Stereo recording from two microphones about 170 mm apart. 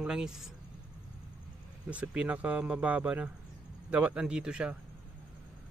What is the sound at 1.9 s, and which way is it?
Speech, 5° right (ahead or behind).